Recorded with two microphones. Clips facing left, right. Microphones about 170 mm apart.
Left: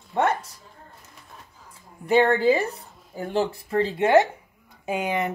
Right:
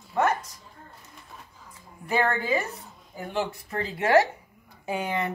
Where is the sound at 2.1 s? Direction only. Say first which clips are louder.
Left 7 dB; 30° left (ahead or behind).